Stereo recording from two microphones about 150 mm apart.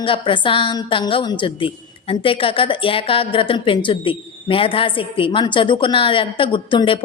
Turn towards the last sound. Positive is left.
turn(degrees=35)  # may be behind; listen again after turning